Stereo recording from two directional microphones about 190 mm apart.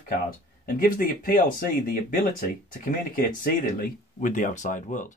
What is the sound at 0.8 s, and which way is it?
Speech, 45° left (ahead or behind).